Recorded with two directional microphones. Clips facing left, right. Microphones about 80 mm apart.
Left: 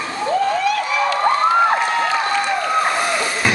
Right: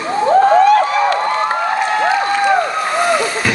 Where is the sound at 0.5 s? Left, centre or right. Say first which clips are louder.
Right 9 dB; right.